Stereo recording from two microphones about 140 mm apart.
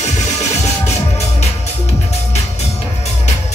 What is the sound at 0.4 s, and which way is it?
Music, 50° left (ahead or behind).